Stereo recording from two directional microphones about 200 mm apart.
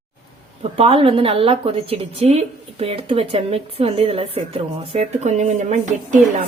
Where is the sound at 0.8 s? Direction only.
30° right (ahead or behind).